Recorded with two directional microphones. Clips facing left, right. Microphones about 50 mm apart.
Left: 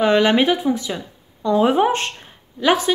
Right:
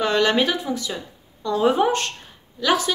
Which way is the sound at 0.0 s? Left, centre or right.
Centre.